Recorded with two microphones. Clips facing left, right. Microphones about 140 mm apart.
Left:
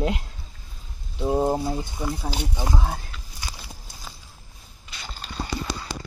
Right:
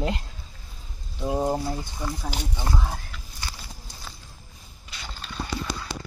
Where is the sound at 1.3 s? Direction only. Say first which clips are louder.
Left 3 dB; 20° left (ahead or behind).